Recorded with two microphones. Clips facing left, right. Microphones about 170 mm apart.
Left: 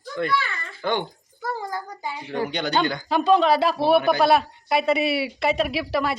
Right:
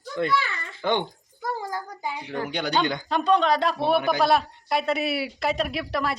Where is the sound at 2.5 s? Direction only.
10° right (ahead or behind).